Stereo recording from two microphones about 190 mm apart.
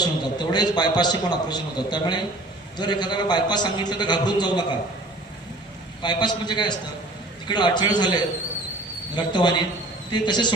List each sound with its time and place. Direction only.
0.0 s a man's voice: 20° left (ahead or behind)
6.0 s a man's voice: 25° left (ahead or behind)